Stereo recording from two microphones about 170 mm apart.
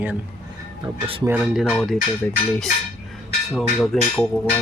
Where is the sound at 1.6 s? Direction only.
5° left (ahead or behind).